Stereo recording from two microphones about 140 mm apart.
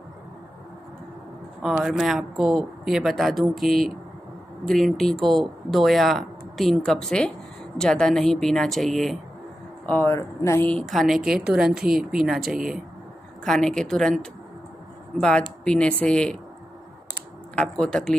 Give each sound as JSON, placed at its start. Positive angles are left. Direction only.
{"t": 1.6, "sound": "speech", "side_deg": 0}
{"t": 9.8, "sound": "speech", "side_deg": 15}
{"t": 17.6, "sound": "speech", "side_deg": 5}